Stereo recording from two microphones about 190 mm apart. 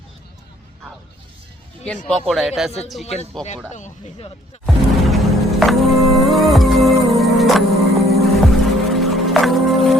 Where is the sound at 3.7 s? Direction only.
40° left (ahead or behind).